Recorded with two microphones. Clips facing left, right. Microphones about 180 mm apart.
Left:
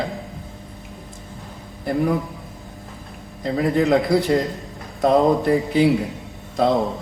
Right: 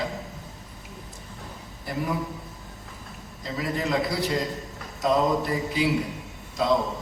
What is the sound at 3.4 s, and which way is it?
A man's voice, 55° left (ahead or behind).